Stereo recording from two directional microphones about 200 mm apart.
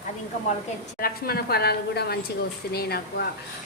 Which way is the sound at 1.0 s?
50° left (ahead or behind).